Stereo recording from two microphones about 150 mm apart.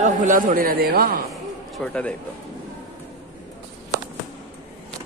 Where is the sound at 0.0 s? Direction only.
55° right (ahead or behind); by 1.2 s 85° right.